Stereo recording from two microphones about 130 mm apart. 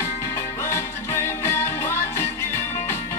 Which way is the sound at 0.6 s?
20° left (ahead or behind).